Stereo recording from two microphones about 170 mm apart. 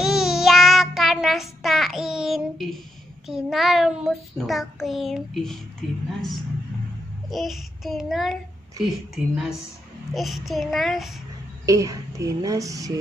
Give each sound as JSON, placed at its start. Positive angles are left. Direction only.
{"t": 0.0, "sound": "child singing", "side_deg": 0}
{"t": 7.2, "sound": "child singing", "side_deg": 0}
{"t": 11.6, "sound": "a woman's voice", "side_deg": -20}